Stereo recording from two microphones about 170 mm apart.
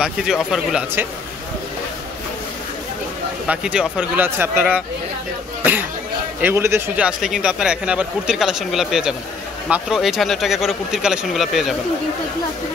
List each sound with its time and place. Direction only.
0.0 s speech: 5° right (ahead or behind)
3.4 s speech: 5° right (ahead or behind)
5.6 s a sound: 10° right (ahead or behind)
6.4 s speech: 15° right (ahead or behind)